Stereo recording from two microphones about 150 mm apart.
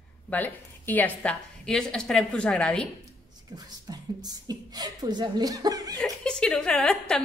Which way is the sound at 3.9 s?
25° right (ahead or behind).